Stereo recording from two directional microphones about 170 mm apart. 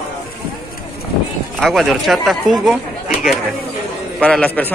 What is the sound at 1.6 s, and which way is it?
A man's voice, centre (ahead or behind).